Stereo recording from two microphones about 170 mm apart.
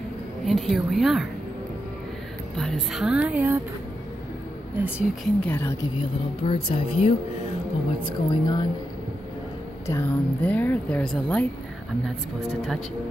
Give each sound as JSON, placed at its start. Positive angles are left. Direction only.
{"t": 0.5, "sound": "a woman's voice", "side_deg": 0}
{"t": 2.5, "sound": "a woman's voice", "side_deg": 0}
{"t": 4.7, "sound": "speech", "side_deg": -10}
{"t": 5.4, "sound": "speech", "side_deg": 10}
{"t": 6.4, "sound": "speech", "side_deg": 35}
{"t": 9.8, "sound": "speech", "side_deg": 15}